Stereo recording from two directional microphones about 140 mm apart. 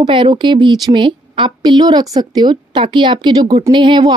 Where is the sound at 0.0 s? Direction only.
35° right (ahead or behind).